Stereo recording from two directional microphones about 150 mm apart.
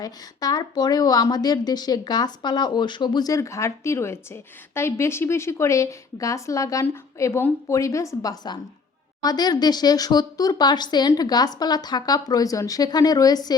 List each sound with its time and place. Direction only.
0.0 s a woman's voice: 25° left (ahead or behind)